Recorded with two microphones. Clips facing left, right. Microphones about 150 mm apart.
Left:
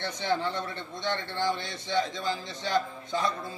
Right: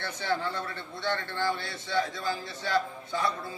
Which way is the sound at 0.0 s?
20° left (ahead or behind).